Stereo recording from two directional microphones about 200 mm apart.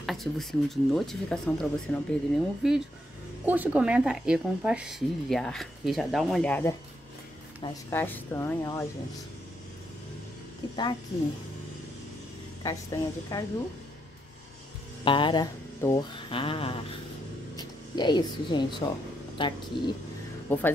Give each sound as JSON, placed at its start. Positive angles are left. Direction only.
{"t": 0.0, "sound": "speech", "side_deg": 0}
{"t": 7.9, "sound": "speech", "side_deg": 10}
{"t": 10.6, "sound": "speech", "side_deg": 25}
{"t": 12.6, "sound": "speech", "side_deg": 15}
{"t": 15.0, "sound": "speech", "side_deg": 25}
{"t": 20.4, "sound": "speech", "side_deg": 10}